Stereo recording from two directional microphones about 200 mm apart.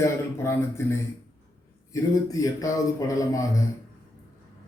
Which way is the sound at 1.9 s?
15° left (ahead or behind).